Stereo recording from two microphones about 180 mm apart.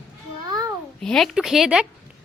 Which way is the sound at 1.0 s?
Centre (ahead or behind).